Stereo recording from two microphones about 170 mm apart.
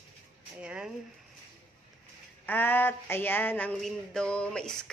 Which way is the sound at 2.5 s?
10° left (ahead or behind).